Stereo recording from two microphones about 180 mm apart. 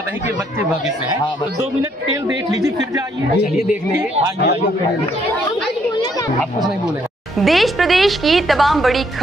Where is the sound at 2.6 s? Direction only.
15° right (ahead or behind).